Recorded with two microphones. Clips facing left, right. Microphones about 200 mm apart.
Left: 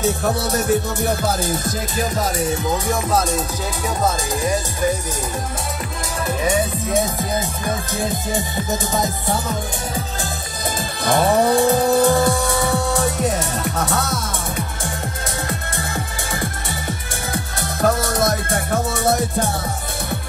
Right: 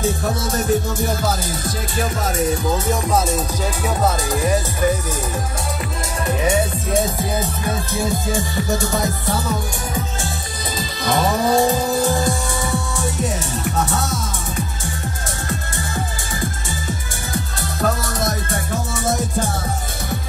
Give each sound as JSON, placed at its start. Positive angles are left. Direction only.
{"t": 0.4, "sound": "music", "side_deg": 65}
{"t": 2.9, "sound": "speech", "side_deg": -10}
{"t": 7.9, "sound": "music", "side_deg": 20}
{"t": 10.8, "sound": "music", "side_deg": 55}
{"t": 15.4, "sound": "music", "side_deg": 60}